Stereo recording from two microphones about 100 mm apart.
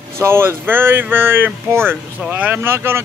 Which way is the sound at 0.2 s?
25° right (ahead or behind).